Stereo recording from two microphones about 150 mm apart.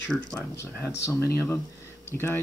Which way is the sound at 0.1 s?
5° left (ahead or behind).